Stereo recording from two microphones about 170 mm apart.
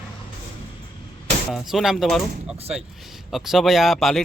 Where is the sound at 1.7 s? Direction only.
Centre (ahead or behind).